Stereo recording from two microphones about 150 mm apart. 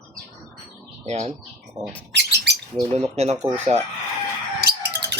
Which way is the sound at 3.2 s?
45° right (ahead or behind).